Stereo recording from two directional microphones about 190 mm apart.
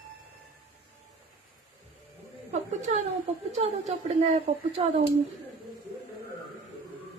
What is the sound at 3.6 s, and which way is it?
A woman's voice, 35° right (ahead or behind).